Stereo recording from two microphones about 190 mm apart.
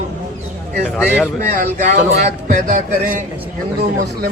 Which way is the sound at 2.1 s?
60° right (ahead or behind).